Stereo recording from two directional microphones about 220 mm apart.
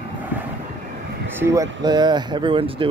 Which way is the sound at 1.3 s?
15° right (ahead or behind).